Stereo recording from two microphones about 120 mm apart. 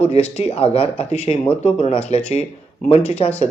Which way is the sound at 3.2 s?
50° left (ahead or behind).